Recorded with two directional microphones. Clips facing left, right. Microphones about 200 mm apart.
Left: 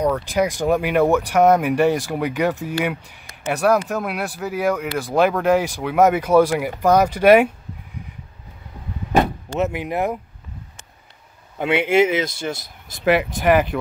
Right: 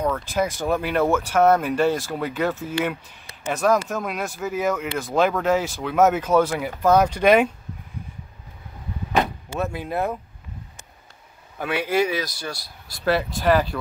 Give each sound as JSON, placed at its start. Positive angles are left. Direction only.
{"t": 0.0, "sound": "speech", "side_deg": 15}
{"t": 9.6, "sound": "speech", "side_deg": 20}
{"t": 11.5, "sound": "speech", "side_deg": 25}